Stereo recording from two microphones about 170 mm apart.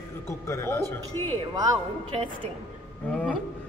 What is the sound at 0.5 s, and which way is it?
Mantra, 15° left (ahead or behind).